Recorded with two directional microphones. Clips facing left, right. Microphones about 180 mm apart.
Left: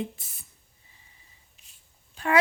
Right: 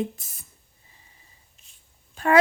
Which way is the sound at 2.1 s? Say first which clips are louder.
Right 5 dB; 45° right (ahead or behind).